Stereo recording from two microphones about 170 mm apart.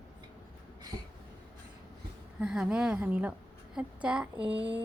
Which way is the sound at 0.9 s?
25° right (ahead or behind).